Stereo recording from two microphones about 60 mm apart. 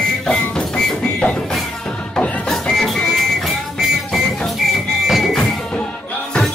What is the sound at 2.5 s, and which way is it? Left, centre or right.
Music, centre.